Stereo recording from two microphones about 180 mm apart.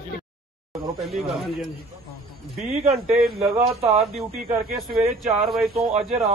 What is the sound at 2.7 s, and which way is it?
Speech, 35° right (ahead or behind).